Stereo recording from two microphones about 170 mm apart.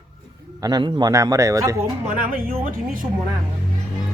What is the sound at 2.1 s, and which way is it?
Speech, 55° right (ahead or behind).